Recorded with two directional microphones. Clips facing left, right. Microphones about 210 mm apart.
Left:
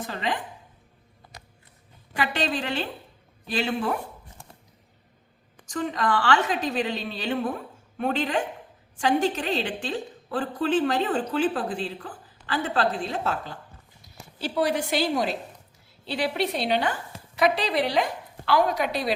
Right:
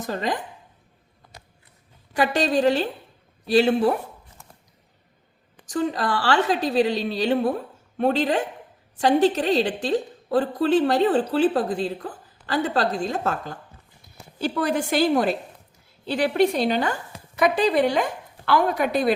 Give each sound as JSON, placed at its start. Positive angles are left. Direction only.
{"t": 0.0, "sound": "a woman's voice", "side_deg": -40}
{"t": 2.1, "sound": "a woman's voice", "side_deg": -45}
{"t": 4.4, "sound": "a sound", "side_deg": 30}
{"t": 5.6, "sound": "a woman's voice", "side_deg": -35}